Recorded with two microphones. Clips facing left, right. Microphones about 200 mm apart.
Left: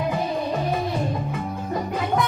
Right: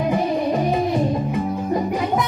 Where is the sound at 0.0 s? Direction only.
20° right (ahead or behind).